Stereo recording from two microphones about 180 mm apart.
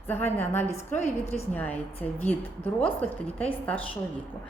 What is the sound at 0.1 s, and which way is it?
Speech, 10° left (ahead or behind).